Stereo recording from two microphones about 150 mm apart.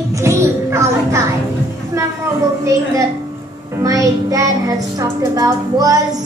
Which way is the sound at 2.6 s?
20° right (ahead or behind).